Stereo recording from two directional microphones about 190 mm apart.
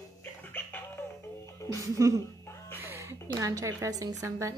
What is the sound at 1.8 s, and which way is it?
Speech, 15° right (ahead or behind).